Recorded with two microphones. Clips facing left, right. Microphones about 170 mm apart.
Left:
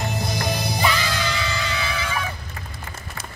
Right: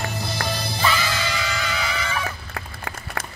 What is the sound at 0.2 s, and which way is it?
Music, 15° left (ahead or behind).